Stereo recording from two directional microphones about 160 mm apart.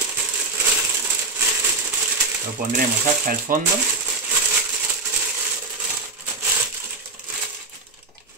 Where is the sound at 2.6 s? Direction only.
60° right (ahead or behind).